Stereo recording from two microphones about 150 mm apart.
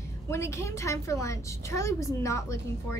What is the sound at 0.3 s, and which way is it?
A woman's voice, 20° left (ahead or behind).